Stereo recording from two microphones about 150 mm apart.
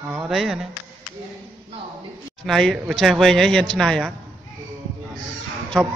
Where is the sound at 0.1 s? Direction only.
5° right (ahead or behind).